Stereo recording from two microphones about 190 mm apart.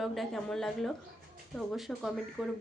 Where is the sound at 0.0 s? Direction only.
Centre (ahead or behind).